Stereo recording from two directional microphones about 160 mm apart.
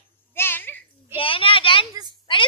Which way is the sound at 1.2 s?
35° left (ahead or behind).